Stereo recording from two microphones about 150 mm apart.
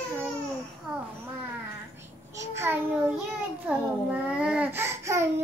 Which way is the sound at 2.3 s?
20° right (ahead or behind).